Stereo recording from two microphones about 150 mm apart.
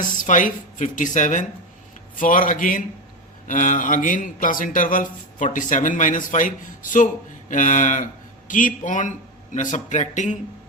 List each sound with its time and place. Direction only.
0.0 s speech: 60° left (ahead or behind)
2.1 s a man's voice: 65° left (ahead or behind)